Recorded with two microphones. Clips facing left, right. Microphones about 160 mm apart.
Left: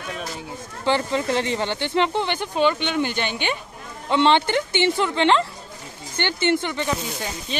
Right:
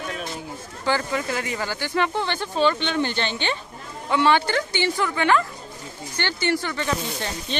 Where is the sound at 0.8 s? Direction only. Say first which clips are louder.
Left 3 dB; 25° left (ahead or behind).